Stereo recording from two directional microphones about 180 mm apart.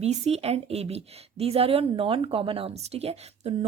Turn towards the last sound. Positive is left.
turn(degrees=-35)  # may be behind; listen again after turning